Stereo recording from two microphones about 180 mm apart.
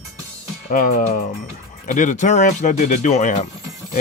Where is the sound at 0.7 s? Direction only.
45° left (ahead or behind).